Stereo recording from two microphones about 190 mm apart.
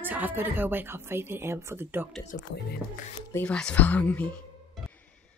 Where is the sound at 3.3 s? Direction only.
10° left (ahead or behind).